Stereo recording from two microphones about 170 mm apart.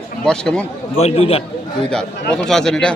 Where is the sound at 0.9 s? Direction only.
40° left (ahead or behind).